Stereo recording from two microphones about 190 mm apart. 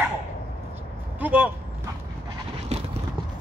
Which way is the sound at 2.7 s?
35° right (ahead or behind).